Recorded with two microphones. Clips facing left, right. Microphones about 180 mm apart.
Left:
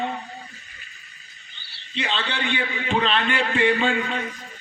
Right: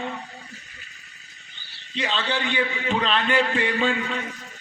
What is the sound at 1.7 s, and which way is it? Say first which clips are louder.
A man's voice: even; 45° right (ahead or behind).